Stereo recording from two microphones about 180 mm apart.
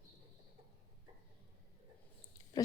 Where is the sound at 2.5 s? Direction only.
20° left (ahead or behind).